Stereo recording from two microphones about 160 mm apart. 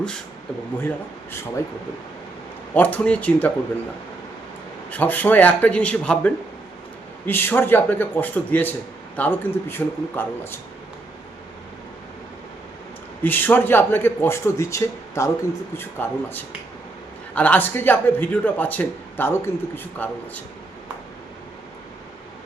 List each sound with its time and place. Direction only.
0.9 s a man's voice: 15° left (ahead or behind)
2.7 s a man's voice: 10° left (ahead or behind)
4.9 s a man's voice: 10° left (ahead or behind)
13.2 s a man's voice: 10° left (ahead or behind)